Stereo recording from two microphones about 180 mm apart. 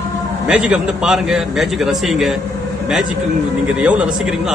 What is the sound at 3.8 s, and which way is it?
Speech, 5° right (ahead or behind).